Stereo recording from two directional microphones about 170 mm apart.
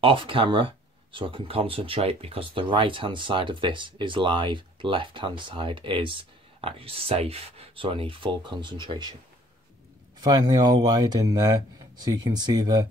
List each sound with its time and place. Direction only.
0.0 s speech: 30° right (ahead or behind)
10.2 s speech: 25° right (ahead or behind)